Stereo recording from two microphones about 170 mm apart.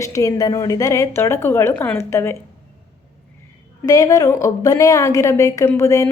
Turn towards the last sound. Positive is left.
turn(degrees=20)  # may be behind; listen again after turning